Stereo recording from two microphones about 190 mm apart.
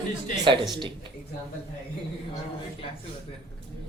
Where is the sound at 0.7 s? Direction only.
25° right (ahead or behind).